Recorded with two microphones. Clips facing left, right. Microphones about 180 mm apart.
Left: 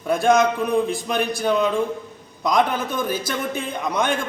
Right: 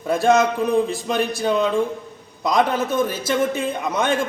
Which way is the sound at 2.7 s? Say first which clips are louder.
Right 3 dB; 30° right (ahead or behind).